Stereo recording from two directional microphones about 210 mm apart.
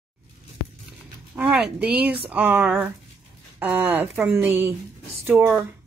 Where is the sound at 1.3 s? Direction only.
5° right (ahead or behind).